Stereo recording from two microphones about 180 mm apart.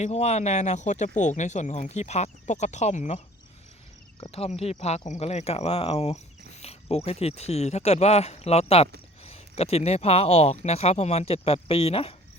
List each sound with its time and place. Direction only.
0.0 s speech: 35° left (ahead or behind)
4.2 s speech: 35° left (ahead or behind)